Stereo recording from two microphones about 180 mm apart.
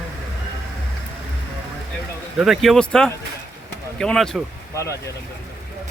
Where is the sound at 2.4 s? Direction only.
Centre (ahead or behind).